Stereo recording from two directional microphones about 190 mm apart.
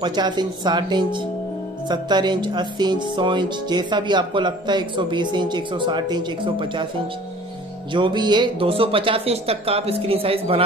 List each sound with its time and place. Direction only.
0.0 s speech: 25° right (ahead or behind)
7.9 s speech: 25° right (ahead or behind)